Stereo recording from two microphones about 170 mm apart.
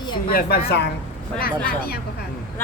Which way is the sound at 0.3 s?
60° left (ahead or behind).